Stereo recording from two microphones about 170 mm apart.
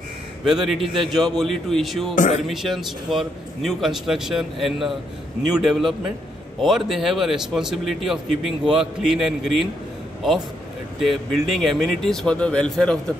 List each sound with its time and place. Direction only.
0.5 s a man's voice: centre (ahead or behind)
2.1 s speech: 45° left (ahead or behind)
2.4 s a man's voice: centre (ahead or behind)
11.0 s a man's voice: centre (ahead or behind)